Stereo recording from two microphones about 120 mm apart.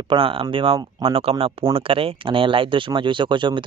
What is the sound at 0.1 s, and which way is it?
Speech, 50° right (ahead or behind).